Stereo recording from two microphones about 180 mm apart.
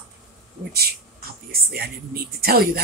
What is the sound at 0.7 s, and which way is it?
A woman's voice, 60° right (ahead or behind).